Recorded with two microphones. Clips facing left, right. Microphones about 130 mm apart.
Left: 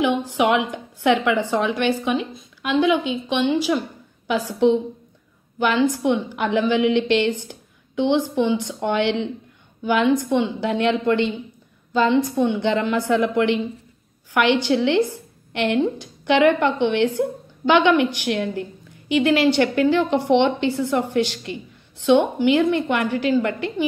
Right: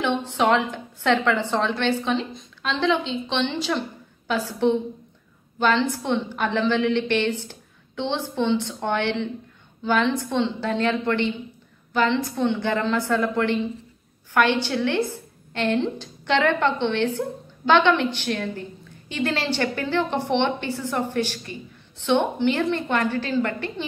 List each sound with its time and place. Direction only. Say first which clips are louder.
0.0 s a woman's voice: left 3 dB; 10° left (ahead or behind)